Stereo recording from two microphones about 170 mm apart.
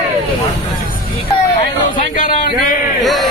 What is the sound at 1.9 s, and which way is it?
A man's voice, 50° left (ahead or behind).